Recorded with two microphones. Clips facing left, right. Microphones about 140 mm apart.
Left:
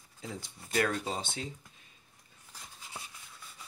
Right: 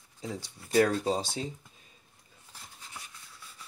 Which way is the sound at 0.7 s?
30° right (ahead or behind).